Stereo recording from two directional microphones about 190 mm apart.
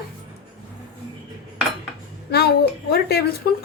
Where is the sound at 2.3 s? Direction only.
60° left (ahead or behind).